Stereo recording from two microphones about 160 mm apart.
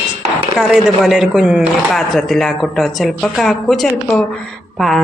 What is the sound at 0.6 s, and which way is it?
Speech, 5° right (ahead or behind).